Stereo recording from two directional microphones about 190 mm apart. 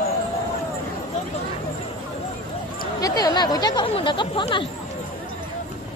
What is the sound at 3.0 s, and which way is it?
Speech, 20° left (ahead or behind).